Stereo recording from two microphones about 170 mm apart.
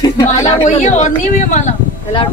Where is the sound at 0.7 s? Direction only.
45° left (ahead or behind).